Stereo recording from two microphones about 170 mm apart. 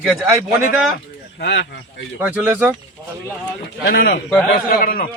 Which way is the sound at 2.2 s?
10° right (ahead or behind).